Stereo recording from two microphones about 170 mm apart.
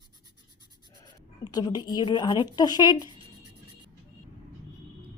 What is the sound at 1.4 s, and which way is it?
Speech, 20° left (ahead or behind).